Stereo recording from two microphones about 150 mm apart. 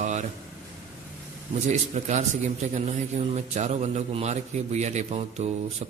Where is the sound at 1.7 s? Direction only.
50° right (ahead or behind).